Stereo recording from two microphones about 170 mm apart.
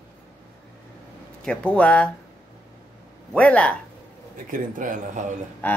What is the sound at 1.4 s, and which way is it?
Speech, 5° left (ahead or behind).